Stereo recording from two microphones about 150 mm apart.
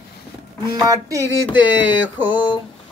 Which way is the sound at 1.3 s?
25° left (ahead or behind).